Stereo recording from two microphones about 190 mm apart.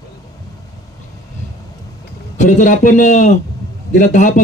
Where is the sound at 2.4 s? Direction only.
40° left (ahead or behind).